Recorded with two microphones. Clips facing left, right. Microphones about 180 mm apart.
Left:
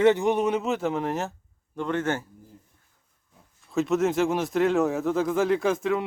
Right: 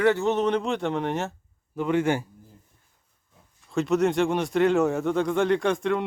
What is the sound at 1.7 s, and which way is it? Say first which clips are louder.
Speech: right 3 dB; 10° right (ahead or behind).